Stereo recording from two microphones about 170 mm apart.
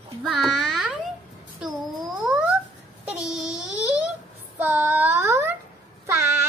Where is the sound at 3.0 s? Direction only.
5° right (ahead or behind).